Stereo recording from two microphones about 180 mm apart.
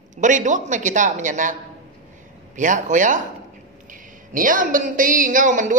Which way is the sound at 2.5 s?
45° right (ahead or behind).